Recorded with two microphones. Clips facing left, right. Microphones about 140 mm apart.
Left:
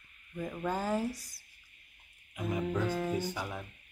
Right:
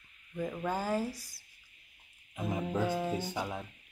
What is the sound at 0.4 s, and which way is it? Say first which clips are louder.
Speech: even; 5° right (ahead or behind).